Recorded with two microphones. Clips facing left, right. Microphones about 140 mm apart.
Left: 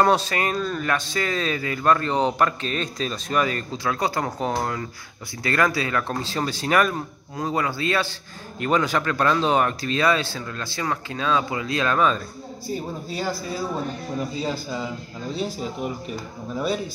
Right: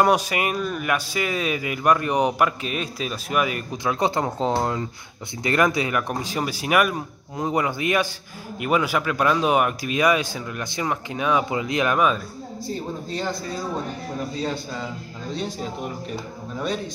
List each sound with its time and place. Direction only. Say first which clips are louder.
0.0 s speech: even; 10° right (ahead or behind)
12.6 s a man's voice: left 1 dB; 10° left (ahead or behind)
16.5 s a man's voice: left 2 dB; 5° left (ahead or behind)